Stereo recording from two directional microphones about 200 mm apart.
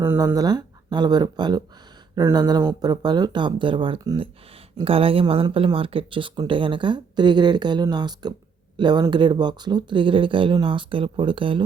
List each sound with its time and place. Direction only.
0.0 s speech: 10° right (ahead or behind)